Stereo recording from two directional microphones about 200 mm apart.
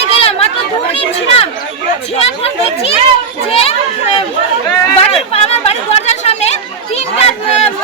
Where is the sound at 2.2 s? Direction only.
30° left (ahead or behind).